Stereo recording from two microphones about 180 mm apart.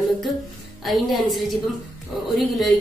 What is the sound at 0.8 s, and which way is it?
Speech, centre (ahead or behind).